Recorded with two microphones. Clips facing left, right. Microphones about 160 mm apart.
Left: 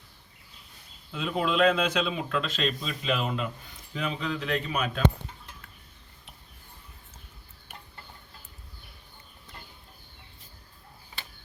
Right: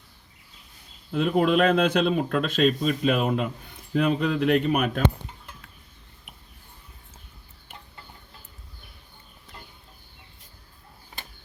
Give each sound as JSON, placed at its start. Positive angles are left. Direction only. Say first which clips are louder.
{"t": 1.1, "sound": "speech", "louder": "right 7 dB", "side_deg": -55}